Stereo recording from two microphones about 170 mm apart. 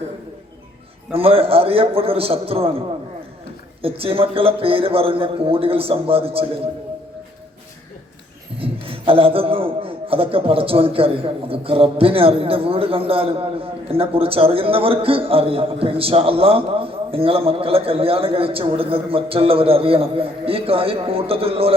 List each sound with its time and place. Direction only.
1.1 s a man's voice: 35° right (ahead or behind)
8.5 s a man's voice: 35° right (ahead or behind)